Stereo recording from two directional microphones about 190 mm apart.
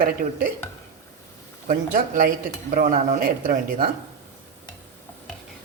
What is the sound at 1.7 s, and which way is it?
A woman's voice, 45° right (ahead or behind).